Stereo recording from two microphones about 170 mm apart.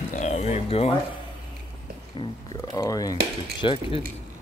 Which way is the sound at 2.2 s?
25° left (ahead or behind).